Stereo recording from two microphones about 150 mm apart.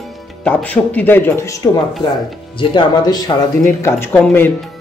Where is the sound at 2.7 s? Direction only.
25° left (ahead or behind).